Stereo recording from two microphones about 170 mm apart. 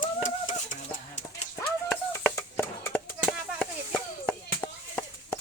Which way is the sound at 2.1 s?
15° left (ahead or behind).